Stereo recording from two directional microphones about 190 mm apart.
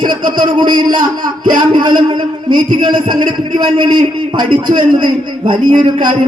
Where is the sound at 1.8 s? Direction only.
25° right (ahead or behind).